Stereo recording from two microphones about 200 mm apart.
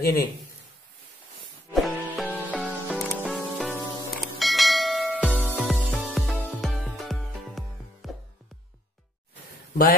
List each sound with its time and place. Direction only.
0.0 s a man's voice: 50° left (ahead or behind)
1.7 s music: centre (ahead or behind)